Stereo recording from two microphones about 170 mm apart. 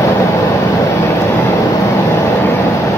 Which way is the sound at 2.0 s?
15° left (ahead or behind).